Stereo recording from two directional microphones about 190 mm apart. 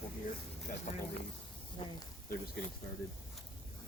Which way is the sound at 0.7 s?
50° left (ahead or behind).